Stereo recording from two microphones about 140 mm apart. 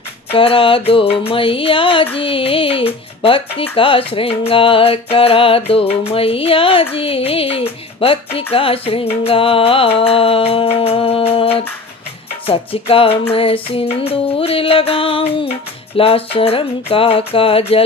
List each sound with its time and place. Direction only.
0.3 s speech: 40° left (ahead or behind)
6.1 s music: 45° left (ahead or behind)
13.3 s speech: 40° left (ahead or behind)
16.0 s music: 40° left (ahead or behind)